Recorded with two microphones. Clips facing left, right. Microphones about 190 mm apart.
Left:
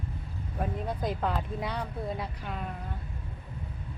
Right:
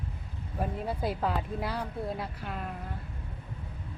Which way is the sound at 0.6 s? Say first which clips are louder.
Even; 5° right (ahead or behind).